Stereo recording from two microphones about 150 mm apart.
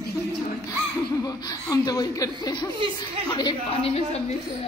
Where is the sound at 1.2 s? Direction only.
25° left (ahead or behind).